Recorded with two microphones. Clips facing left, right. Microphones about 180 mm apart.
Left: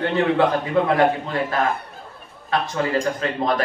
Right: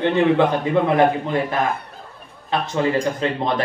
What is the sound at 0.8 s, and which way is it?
Speech, 20° right (ahead or behind).